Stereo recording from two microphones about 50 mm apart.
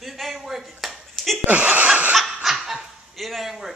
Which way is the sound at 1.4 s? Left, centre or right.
Right.